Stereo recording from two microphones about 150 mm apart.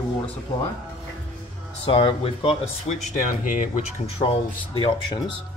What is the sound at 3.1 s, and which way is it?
Speech, 60° left (ahead or behind).